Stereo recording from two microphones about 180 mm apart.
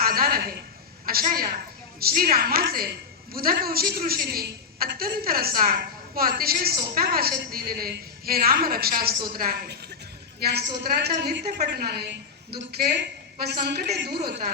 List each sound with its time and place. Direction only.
0.0 s a woman's voice: 55° right (ahead or behind)